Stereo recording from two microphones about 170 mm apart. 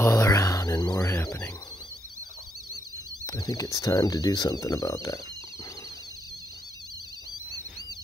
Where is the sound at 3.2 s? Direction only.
20° left (ahead or behind).